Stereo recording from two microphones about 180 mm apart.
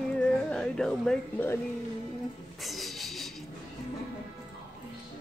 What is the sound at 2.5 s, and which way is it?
Music, centre (ahead or behind).